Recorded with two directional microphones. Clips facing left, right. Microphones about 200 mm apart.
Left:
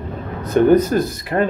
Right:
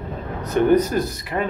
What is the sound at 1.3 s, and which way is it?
Speech, 45° left (ahead or behind).